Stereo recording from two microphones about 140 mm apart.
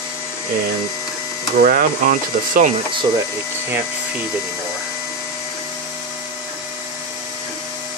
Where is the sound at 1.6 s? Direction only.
80° right.